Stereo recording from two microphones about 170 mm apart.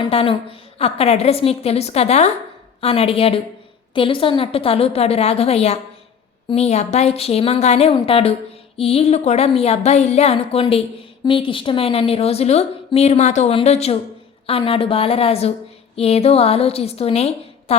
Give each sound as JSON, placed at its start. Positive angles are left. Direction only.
{"t": 0.1, "sound": "a woman's voice", "side_deg": 35}